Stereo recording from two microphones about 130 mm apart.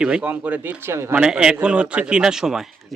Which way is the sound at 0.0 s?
5° right (ahead or behind).